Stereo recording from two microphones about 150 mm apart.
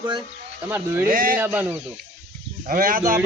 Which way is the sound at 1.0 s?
70° right (ahead or behind).